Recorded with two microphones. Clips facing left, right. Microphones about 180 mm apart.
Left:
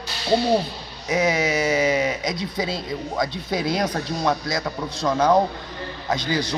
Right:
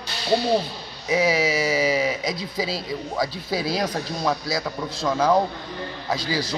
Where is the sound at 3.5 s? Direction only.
20° left (ahead or behind).